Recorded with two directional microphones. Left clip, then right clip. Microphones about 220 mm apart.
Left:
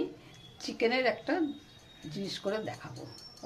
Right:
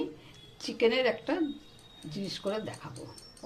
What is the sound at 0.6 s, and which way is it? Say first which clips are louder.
A woman's voice: right 2 dB; 5° left (ahead or behind).